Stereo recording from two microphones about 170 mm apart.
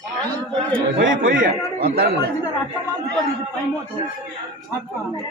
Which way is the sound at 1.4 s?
65° right (ahead or behind).